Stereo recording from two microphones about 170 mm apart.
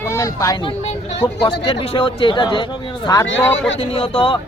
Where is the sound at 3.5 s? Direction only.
90° left.